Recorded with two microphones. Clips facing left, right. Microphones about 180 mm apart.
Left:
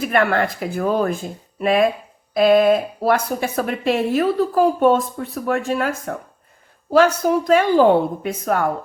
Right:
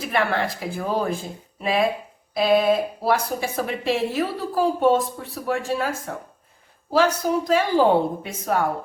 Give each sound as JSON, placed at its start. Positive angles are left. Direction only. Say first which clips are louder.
{"t": 0.1, "sound": "speech", "louder": "left 3 dB", "side_deg": 50}